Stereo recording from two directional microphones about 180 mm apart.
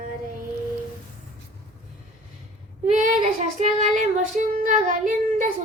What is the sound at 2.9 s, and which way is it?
Child singing, 45° right (ahead or behind).